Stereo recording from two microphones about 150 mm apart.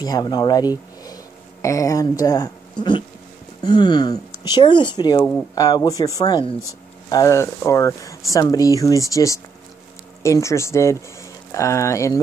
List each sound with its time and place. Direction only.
0.0 s speech: 25° left (ahead or behind)
1.0 s a sound: 20° left (ahead or behind)
3.6 s speech: 30° left (ahead or behind)